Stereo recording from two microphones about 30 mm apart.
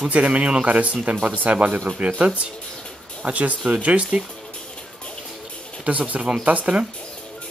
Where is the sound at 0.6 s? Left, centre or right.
Right.